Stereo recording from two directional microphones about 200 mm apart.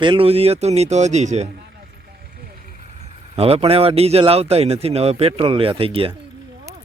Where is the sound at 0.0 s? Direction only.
25° right (ahead or behind).